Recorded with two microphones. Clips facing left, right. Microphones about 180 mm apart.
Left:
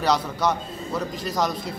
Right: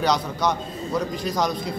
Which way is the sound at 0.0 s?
5° left (ahead or behind).